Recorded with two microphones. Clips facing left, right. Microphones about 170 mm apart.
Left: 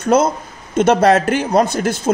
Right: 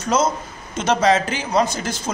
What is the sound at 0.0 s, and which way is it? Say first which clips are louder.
Speech: left 5 dB; 60° left (ahead or behind).